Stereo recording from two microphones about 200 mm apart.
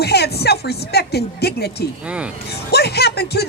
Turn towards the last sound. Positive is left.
turn(degrees=55)  # may be behind; listen again after turning